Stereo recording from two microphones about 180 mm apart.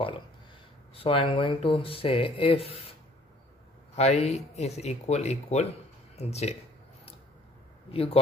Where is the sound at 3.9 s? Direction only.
40° left (ahead or behind).